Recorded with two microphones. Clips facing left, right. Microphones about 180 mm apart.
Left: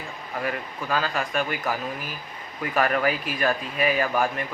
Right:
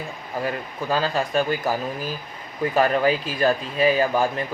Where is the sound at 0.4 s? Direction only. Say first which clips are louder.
Right 3 dB; 30° right (ahead or behind).